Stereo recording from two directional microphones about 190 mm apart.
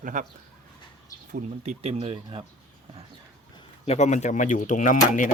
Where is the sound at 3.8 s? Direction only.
35° left (ahead or behind).